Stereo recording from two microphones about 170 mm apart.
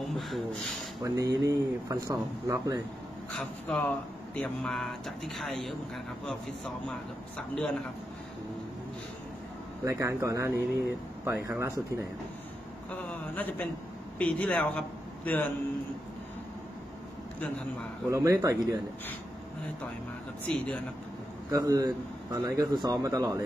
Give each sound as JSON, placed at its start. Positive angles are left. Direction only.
{"t": 0.1, "sound": "speech", "side_deg": 0}
{"t": 1.0, "sound": "a man's voice", "side_deg": -20}
{"t": 3.3, "sound": "a man's voice", "side_deg": 5}
{"t": 9.8, "sound": "speech", "side_deg": -20}
{"t": 12.9, "sound": "a sound", "side_deg": 10}
{"t": 14.1, "sound": "a man's voice", "side_deg": 5}
{"t": 18.1, "sound": "speech", "side_deg": -20}
{"t": 20.4, "sound": "speech", "side_deg": 5}
{"t": 21.5, "sound": "a man's voice", "side_deg": -20}